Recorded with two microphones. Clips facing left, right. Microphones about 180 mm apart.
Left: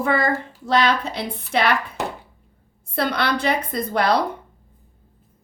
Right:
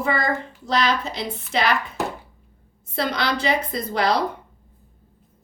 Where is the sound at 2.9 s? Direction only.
60° left (ahead or behind).